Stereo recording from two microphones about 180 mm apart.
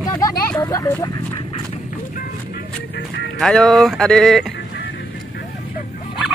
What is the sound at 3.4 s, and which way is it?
Speech, centre (ahead or behind).